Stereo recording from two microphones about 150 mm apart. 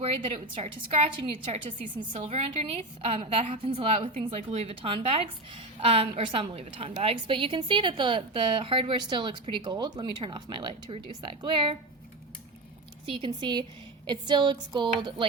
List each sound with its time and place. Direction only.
0.5 s a woman's voice: 40° right (ahead or behind)
13.1 s a woman's voice: 35° right (ahead or behind)